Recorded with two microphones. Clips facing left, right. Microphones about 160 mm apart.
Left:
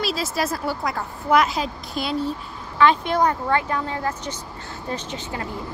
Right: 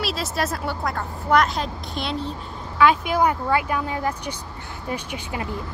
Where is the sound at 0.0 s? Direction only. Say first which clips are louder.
Left 1 dB; centre (ahead or behind).